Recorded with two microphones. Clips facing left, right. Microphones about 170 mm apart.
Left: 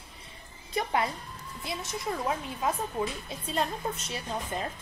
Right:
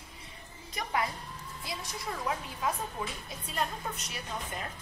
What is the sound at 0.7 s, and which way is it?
Speech, 25° left (ahead or behind).